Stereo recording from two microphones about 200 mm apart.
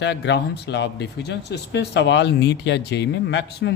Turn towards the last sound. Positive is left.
turn(degrees=60)  # may be behind; listen again after turning